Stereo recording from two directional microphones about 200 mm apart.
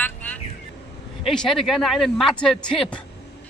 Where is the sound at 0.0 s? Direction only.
5° left (ahead or behind).